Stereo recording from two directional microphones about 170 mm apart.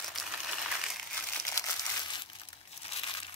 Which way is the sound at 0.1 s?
Centre (ahead or behind).